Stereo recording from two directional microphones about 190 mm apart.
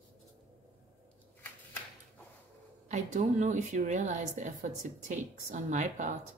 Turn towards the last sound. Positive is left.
turn(degrees=-40)  # may be behind; listen again after turning